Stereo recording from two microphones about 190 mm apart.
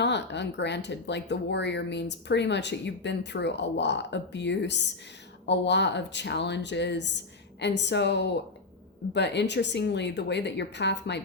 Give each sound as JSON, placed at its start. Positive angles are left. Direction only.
{"t": 0.0, "sound": "speech", "side_deg": 65}